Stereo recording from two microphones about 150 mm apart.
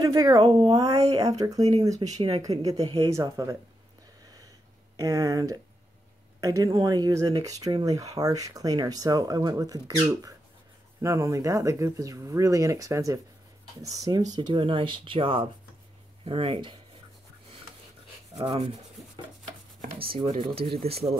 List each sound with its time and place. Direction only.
0.0 s speech: 25° right (ahead or behind)
0.4 s speech: 35° right (ahead or behind)
0.7 s speech: 25° right (ahead or behind)
2.0 s speech: 45° right (ahead or behind)
2.4 s speech: 25° right (ahead or behind)
4.9 s speech: 25° right (ahead or behind)
18.3 s speech: 40° right (ahead or behind)
19.8 s chopping: 85° right
20.2 s speech: 35° right (ahead or behind)